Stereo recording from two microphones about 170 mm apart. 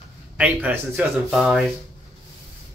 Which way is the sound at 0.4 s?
10° right (ahead or behind).